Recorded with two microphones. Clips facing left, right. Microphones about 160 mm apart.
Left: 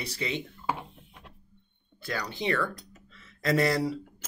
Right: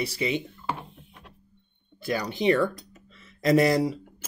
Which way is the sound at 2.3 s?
20° right (ahead or behind).